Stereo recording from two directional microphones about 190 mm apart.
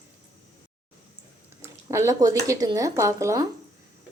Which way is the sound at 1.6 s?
15° right (ahead or behind).